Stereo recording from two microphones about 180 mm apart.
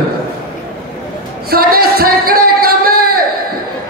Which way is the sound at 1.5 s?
55° right (ahead or behind).